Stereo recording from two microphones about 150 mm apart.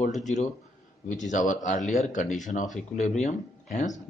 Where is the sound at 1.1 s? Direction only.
55° left (ahead or behind).